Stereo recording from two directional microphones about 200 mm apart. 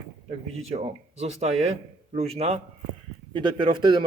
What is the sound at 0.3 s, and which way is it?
A man's voice, 30° right (ahead or behind).